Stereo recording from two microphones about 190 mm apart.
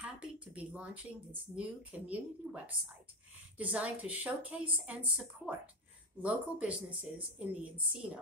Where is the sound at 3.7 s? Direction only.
5° right (ahead or behind).